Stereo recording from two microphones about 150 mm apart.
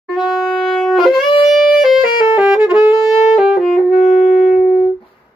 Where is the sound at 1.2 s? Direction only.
35° left (ahead or behind).